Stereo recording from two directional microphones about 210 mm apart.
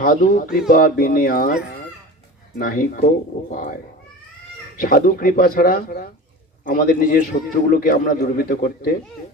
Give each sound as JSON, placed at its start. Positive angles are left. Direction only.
{"t": 0.0, "sound": "speech", "side_deg": 40}
{"t": 2.6, "sound": "a man's voice", "side_deg": 40}
{"t": 4.8, "sound": "a man's voice", "side_deg": 45}